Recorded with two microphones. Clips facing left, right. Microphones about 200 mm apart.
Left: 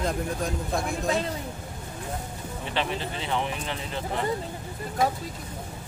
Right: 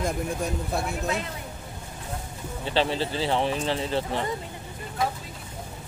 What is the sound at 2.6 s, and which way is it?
Speech, 30° right (ahead or behind).